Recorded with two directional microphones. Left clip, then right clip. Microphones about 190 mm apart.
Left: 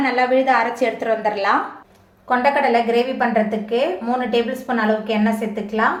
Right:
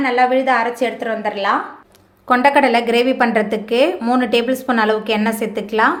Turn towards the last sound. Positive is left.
turn(degrees=-50)  # may be behind; listen again after turning